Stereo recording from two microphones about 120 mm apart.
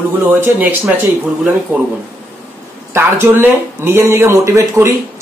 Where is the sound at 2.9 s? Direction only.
20° right (ahead or behind).